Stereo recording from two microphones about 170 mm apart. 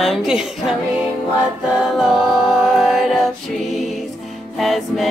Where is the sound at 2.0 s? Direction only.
5° right (ahead or behind).